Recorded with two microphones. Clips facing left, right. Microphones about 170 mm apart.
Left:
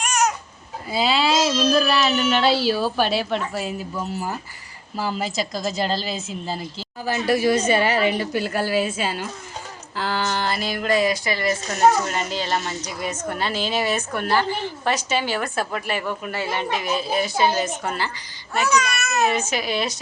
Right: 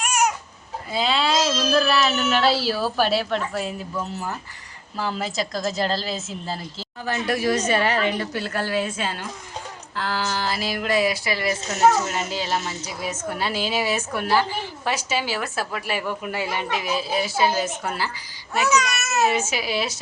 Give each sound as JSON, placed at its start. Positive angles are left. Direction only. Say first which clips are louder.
{"t": 0.0, "sound": "baby cry", "louder": "even", "side_deg": -10}
{"t": 0.9, "sound": "a woman's voice", "louder": "left 2 dB", "side_deg": 5}
{"t": 19.1, "sound": "speech", "louder": "even", "side_deg": -5}